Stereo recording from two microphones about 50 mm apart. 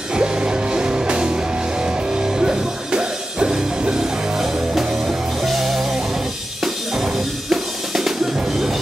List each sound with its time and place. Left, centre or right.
0.1 s music: centre
6.6 s drum: centre